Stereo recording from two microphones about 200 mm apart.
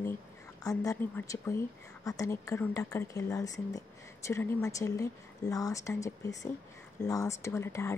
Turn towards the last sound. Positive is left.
turn(degrees=15)  # may be behind; listen again after turning